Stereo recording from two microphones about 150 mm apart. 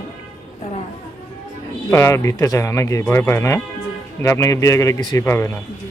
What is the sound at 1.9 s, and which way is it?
Speech, 15° left (ahead or behind).